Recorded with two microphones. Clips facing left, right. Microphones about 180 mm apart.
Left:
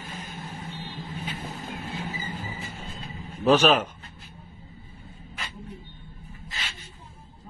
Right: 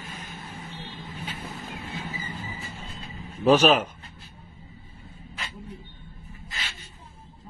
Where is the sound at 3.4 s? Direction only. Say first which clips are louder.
Right 1 dB; 10° right (ahead or behind).